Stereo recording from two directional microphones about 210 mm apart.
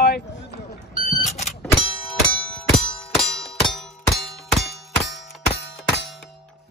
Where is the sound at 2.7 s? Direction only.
Centre (ahead or behind).